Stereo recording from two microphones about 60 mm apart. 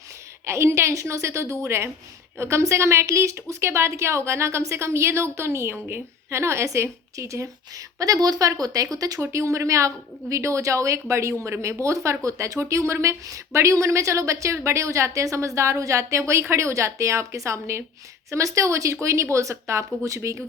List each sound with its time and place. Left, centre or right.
0.4 s a woman's voice: right
9.2 s speech: right